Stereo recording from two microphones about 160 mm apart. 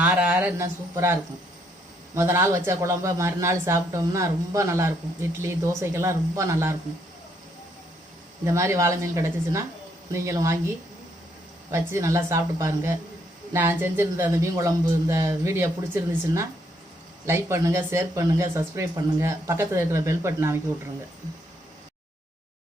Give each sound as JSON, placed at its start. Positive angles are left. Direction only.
{"t": 0.0, "sound": "speech", "side_deg": -10}
{"t": 8.4, "sound": "speech", "side_deg": -20}
{"t": 11.7, "sound": "speech", "side_deg": -15}